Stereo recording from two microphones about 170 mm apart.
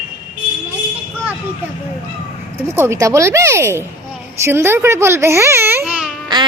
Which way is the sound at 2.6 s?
15° right (ahead or behind).